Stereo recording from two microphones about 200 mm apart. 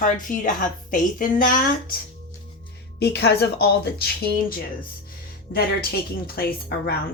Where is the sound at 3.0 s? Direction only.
55° left (ahead or behind).